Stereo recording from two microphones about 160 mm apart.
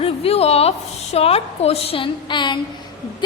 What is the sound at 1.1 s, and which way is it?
A woman's voice, 40° left (ahead or behind).